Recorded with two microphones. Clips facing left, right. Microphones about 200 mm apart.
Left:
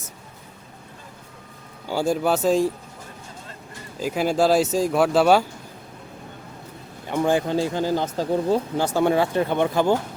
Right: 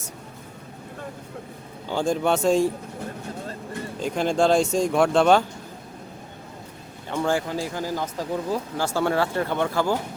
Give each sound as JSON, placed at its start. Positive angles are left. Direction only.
{"t": 1.9, "sound": "speech", "side_deg": 5}
{"t": 4.0, "sound": "speech", "side_deg": 5}
{"t": 7.1, "sound": "speech", "side_deg": 15}